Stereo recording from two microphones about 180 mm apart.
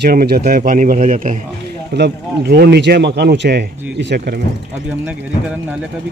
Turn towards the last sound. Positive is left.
turn(degrees=-5)  # may be behind; listen again after turning